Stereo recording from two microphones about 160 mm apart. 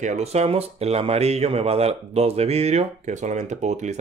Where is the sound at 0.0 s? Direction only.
45° right (ahead or behind).